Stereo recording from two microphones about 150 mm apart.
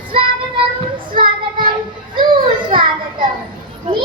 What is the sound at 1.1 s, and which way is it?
Child singing, 35° right (ahead or behind).